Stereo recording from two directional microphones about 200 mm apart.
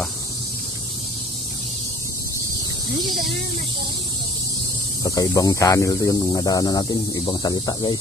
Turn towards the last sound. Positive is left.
turn(degrees=20)  # may be behind; listen again after turning